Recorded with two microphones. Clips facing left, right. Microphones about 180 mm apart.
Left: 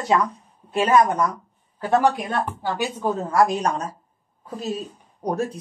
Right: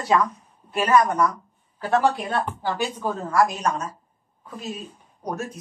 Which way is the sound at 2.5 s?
15° left (ahead or behind).